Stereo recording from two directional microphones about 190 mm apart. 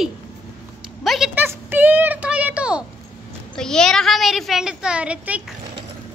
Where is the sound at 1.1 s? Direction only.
Centre (ahead or behind).